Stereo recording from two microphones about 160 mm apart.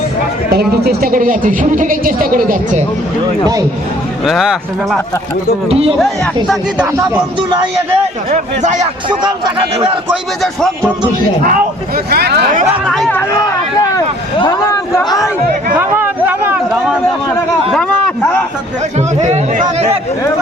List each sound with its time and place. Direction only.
0.9 s speech: 65° right (ahead or behind)
4.3 s speech: centre (ahead or behind)
5.6 s speech: 35° right (ahead or behind)
6.7 s speech: 15° right (ahead or behind)
8.3 s speech: 45° right (ahead or behind)
12.1 s speech: 90° right
12.8 s speech: centre (ahead or behind)
14.4 s a man's voice: 25° left (ahead or behind)
15.7 s speech: 10° right (ahead or behind)
17.7 s speech: 5° left (ahead or behind)
18.9 s speech: 45° right (ahead or behind)